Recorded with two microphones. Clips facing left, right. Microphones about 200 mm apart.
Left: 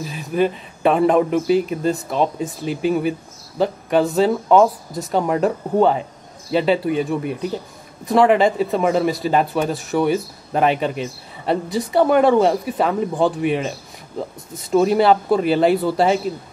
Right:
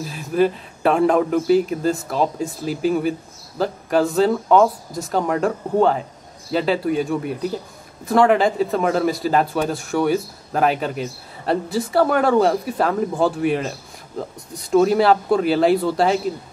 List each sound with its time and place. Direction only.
0.1 s a man's voice: centre (ahead or behind)
11.9 s speech: 20° left (ahead or behind)
12.4 s a man's voice: centre (ahead or behind)